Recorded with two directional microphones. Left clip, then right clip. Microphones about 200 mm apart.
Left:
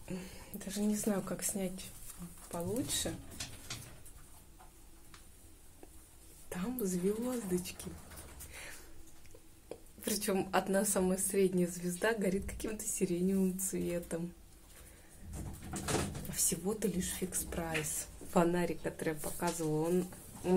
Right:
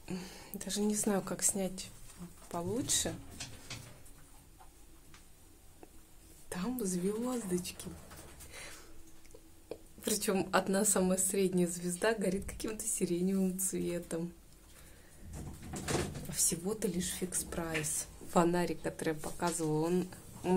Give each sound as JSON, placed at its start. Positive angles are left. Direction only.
{"t": 0.1, "sound": "a sound", "side_deg": -20}
{"t": 0.6, "sound": "a woman's voice", "side_deg": -10}
{"t": 6.5, "sound": "a woman's voice", "side_deg": -5}
{"t": 9.7, "sound": "a woman's voice", "side_deg": -15}
{"t": 16.3, "sound": "a woman's voice", "side_deg": 0}